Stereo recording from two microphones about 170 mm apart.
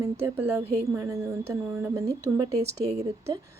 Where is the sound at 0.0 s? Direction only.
15° right (ahead or behind).